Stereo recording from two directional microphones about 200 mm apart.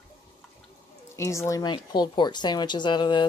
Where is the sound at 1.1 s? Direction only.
15° left (ahead or behind).